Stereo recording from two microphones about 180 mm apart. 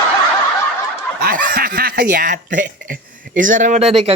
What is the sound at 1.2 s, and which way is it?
Snicker, 55° right (ahead or behind).